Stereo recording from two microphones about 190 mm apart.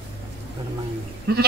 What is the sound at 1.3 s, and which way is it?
Sheep, 60° right (ahead or behind).